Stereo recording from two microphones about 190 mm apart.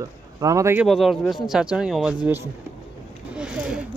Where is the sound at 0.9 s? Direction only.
Centre (ahead or behind).